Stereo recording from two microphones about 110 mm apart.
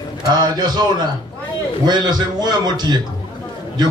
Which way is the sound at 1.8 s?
40° right (ahead or behind).